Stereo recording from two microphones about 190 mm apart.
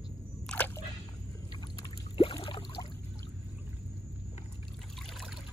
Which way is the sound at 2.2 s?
30° left (ahead or behind).